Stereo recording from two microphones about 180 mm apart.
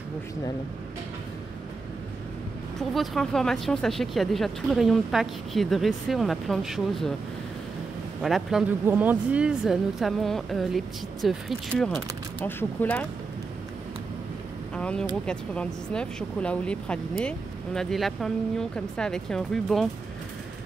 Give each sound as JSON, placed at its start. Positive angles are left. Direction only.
{"t": 2.8, "sound": "speech", "side_deg": 0}
{"t": 8.2, "sound": "speech", "side_deg": 0}
{"t": 14.8, "sound": "speech", "side_deg": 5}